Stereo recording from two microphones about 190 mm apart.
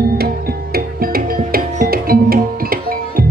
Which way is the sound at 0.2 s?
55° right (ahead or behind).